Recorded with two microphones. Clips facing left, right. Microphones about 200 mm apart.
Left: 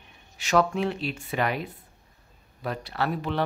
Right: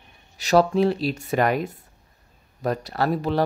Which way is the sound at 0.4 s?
35° right (ahead or behind).